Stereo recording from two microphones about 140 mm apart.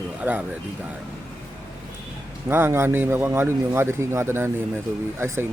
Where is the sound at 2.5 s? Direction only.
15° right (ahead or behind).